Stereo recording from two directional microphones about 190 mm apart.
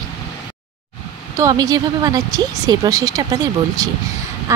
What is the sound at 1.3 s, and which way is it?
A woman's voice, 20° right (ahead or behind).